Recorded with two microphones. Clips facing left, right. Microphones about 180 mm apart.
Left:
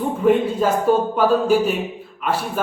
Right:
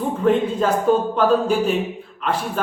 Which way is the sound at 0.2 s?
5° left (ahead or behind).